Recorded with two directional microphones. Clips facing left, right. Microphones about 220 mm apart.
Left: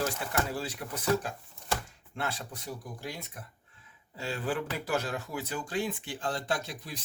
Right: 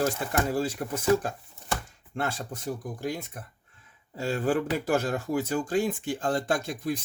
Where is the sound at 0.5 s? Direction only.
45° right (ahead or behind).